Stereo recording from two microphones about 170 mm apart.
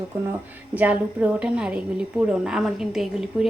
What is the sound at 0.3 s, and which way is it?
A woman's voice, 10° right (ahead or behind).